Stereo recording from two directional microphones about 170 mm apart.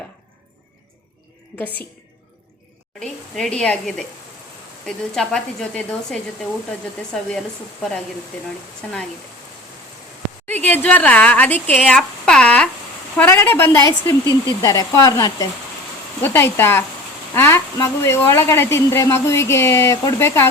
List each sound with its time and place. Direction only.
1.5 s speech: 10° left (ahead or behind)
3.0 s speech: 5° left (ahead or behind)
10.4 s a woman's voice: 10° left (ahead or behind)